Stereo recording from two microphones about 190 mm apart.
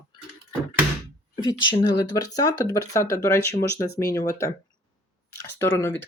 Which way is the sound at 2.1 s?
20° left (ahead or behind).